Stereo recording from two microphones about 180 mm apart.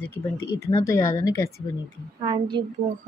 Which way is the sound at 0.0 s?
10° left (ahead or behind).